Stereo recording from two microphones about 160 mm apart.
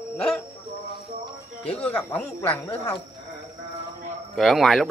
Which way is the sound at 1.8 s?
10° left (ahead or behind).